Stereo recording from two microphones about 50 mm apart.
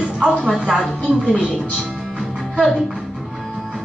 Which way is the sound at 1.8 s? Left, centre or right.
Centre.